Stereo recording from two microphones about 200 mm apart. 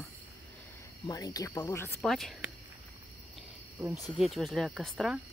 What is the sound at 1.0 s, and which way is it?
Speech, 15° left (ahead or behind).